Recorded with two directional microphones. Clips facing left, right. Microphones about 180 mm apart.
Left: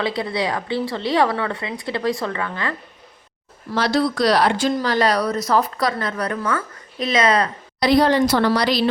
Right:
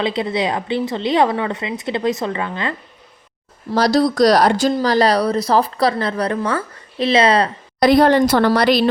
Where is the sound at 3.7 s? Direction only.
40° right (ahead or behind).